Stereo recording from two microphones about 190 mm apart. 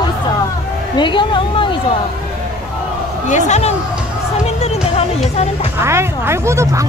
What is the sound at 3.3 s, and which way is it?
Speech, 35° left (ahead or behind).